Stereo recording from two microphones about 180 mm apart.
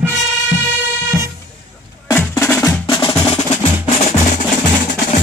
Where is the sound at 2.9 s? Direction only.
25° left (ahead or behind); by 5.2 s 45° left (ahead or behind).